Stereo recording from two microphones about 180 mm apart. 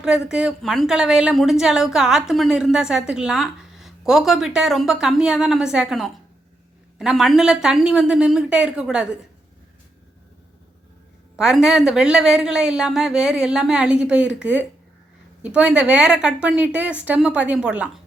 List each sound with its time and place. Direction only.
0.0 s a woman's voice: 5° right (ahead or behind)
11.3 s a woman's voice: 5° right (ahead or behind)